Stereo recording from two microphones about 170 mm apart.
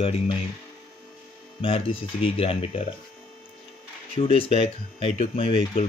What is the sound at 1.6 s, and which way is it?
Speech, 30° left (ahead or behind).